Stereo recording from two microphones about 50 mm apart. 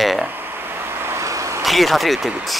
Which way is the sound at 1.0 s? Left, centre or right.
Right.